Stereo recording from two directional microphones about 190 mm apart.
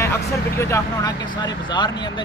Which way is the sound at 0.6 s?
15° left (ahead or behind).